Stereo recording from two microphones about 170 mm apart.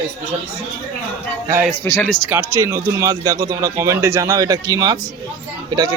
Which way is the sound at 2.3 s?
15° right (ahead or behind).